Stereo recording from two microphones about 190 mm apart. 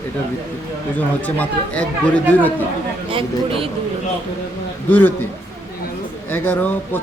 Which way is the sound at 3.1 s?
30° right (ahead or behind).